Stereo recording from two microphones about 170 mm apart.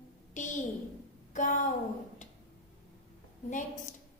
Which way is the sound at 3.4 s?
50° left (ahead or behind).